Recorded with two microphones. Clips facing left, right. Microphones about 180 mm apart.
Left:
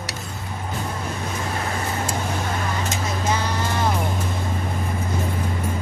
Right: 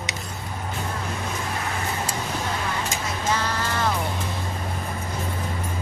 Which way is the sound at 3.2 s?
15° left (ahead or behind).